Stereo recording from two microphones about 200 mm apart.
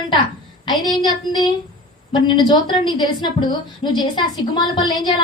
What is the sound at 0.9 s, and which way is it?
A woman's voice, 20° left (ahead or behind).